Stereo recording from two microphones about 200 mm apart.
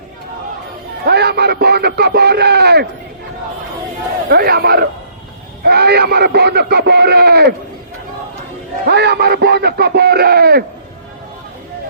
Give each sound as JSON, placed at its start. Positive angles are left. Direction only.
{"t": 1.0, "sound": "speech", "side_deg": -55}
{"t": 4.3, "sound": "speech", "side_deg": -50}
{"t": 8.9, "sound": "speech", "side_deg": -55}